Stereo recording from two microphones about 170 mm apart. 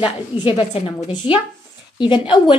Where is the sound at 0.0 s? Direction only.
30° left (ahead or behind).